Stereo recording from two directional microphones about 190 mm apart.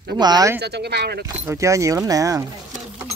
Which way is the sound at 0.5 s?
60° right (ahead or behind).